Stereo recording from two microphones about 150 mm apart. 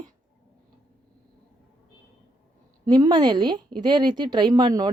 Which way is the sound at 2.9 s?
30° right (ahead or behind).